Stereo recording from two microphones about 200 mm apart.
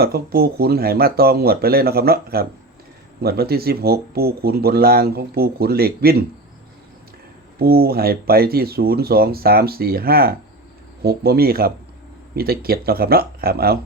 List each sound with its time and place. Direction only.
0.0 s speech: 50° right (ahead or behind)
7.6 s speech: 50° right (ahead or behind)